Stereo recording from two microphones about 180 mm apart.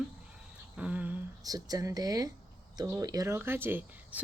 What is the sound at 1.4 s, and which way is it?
Speech, 20° right (ahead or behind).